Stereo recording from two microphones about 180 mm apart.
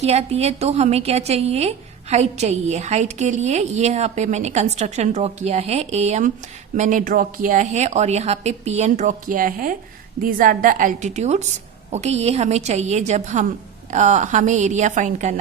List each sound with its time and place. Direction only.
0.0 s a woman's voice: 35° right (ahead or behind)